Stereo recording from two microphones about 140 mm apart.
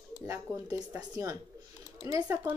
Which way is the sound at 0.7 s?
10° right (ahead or behind).